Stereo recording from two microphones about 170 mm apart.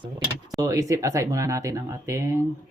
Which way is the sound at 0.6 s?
20° right (ahead or behind).